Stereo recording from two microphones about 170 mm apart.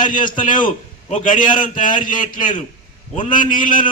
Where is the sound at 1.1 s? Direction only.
50° left (ahead or behind).